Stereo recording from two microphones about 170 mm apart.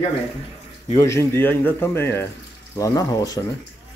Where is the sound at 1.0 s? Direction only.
15° left (ahead or behind).